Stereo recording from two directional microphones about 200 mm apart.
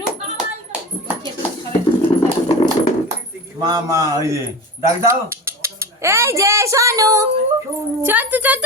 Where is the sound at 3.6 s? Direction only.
20° right (ahead or behind).